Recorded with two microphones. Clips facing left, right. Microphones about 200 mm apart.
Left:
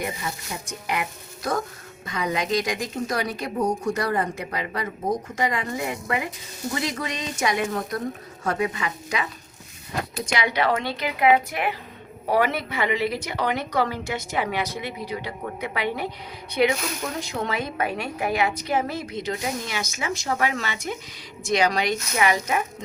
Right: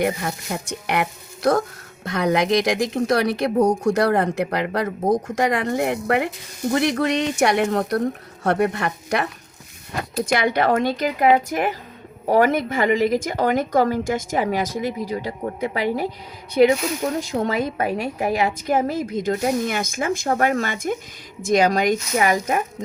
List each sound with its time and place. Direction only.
0.0 s a woman's voice: 60° right (ahead or behind)
10.3 s a woman's voice: 50° right (ahead or behind)